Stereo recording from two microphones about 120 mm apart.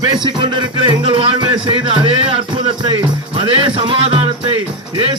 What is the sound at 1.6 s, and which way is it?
Music, 45° right (ahead or behind).